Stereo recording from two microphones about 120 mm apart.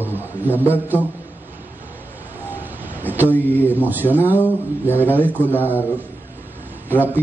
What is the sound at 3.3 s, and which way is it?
Speech, 15° left (ahead or behind).